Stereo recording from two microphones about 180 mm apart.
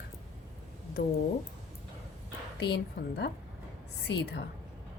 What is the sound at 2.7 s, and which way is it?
Speech, 70° left (ahead or behind).